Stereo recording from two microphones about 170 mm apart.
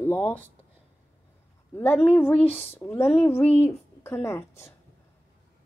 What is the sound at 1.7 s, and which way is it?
A woman's voice, 10° left (ahead or behind).